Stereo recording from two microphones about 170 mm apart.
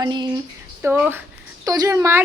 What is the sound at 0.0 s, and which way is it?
Speech, 25° right (ahead or behind).